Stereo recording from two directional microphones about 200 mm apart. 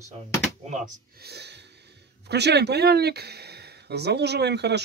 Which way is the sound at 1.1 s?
55° right (ahead or behind).